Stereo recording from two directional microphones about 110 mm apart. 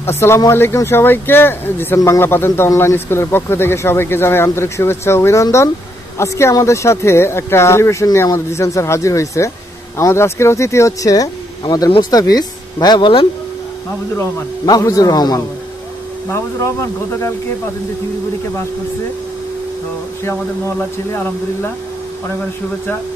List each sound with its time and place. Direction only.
0.5 s speech: 25° left (ahead or behind); by 13.3 s 50° left (ahead or behind)
14.7 s speech: 30° left (ahead or behind)